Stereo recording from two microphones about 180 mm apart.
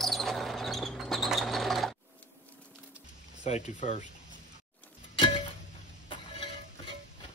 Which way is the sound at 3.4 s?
40° left (ahead or behind).